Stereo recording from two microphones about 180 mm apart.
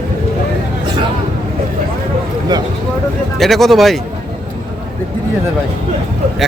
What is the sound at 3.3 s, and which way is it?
Speech, centre (ahead or behind).